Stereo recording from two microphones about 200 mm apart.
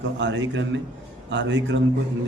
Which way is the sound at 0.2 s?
65° right (ahead or behind).